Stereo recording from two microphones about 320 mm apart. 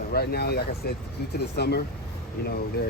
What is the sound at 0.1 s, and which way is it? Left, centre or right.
Speech, left.